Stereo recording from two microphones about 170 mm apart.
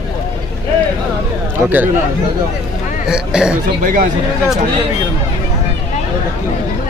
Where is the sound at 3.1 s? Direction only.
5° right (ahead or behind).